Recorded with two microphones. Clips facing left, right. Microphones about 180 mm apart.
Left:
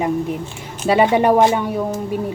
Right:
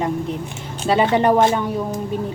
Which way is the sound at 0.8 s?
10° left (ahead or behind).